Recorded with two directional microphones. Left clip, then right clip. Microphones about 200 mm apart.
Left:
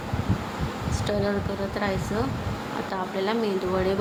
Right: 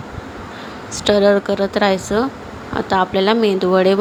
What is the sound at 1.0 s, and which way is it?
A woman's voice, 40° right (ahead or behind).